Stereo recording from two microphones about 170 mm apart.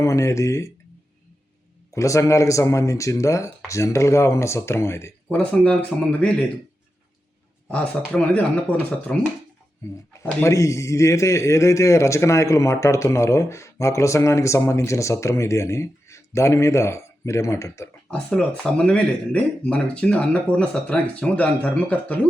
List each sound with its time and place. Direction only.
0.0 s a man's voice: 15° left (ahead or behind)
1.9 s a man's voice: 20° left (ahead or behind)
7.7 s a man's voice: 10° left (ahead or behind)
10.4 s a man's voice: 15° left (ahead or behind)
18.3 s a man's voice: 5° left (ahead or behind)